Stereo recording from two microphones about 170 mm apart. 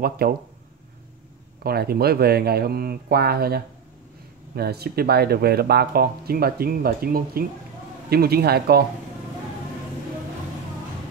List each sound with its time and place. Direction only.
0.0 s speech: 60° right (ahead or behind)
1.6 s speech: 65° right (ahead or behind)